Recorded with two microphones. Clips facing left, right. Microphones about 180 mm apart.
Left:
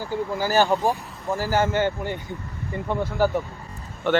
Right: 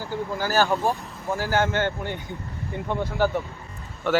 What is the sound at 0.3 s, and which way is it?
Speech, 15° left (ahead or behind).